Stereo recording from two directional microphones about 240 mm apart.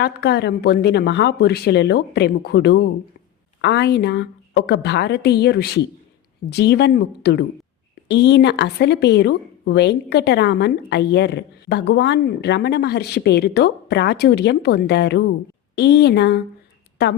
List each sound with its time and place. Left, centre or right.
0.0 s a woman's voice: left